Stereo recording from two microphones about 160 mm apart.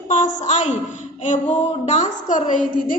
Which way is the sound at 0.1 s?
50° left (ahead or behind).